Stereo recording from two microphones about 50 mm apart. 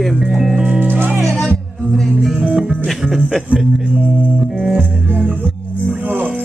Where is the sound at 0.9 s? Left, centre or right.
Right.